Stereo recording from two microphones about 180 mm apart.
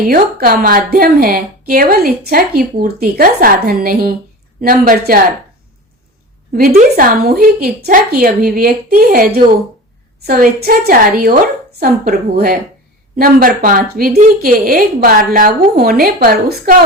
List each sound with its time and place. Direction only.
0.0 s a woman's voice: 55° right (ahead or behind)
6.5 s a woman's voice: 55° right (ahead or behind)